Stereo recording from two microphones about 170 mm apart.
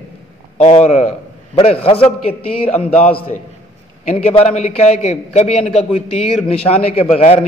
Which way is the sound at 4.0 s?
40° left (ahead or behind).